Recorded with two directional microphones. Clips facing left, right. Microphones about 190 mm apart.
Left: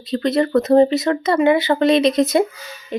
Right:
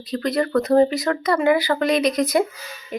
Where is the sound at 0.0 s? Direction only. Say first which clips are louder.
Left 4 dB; 25° left (ahead or behind).